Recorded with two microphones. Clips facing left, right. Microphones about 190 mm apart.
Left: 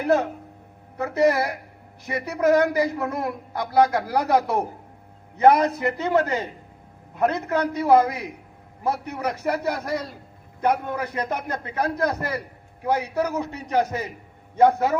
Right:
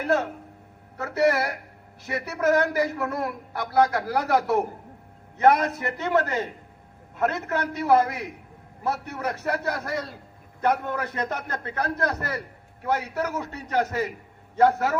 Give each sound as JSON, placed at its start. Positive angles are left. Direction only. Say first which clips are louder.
{"t": 0.0, "sound": "speech", "louder": "left 3 dB", "side_deg": 15}